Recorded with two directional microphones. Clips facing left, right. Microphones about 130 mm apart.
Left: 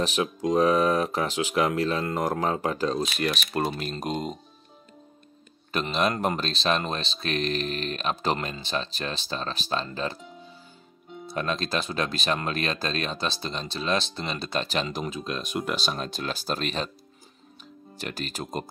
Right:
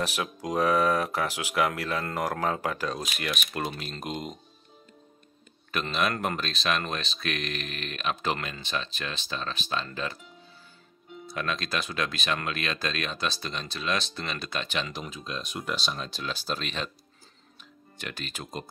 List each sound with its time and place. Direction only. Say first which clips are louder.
0.0 s speech: left 5 dB; 25° left (ahead or behind)
5.7 s speech: left 3 dB; 30° left (ahead or behind)
11.2 s speech: left 3 dB; 35° left (ahead or behind)
15.1 s speech: left 6 dB; 55° left (ahead or behind); by 16.9 s 40° left (ahead or behind)
17.9 s speech: left 5 dB; 35° left (ahead or behind)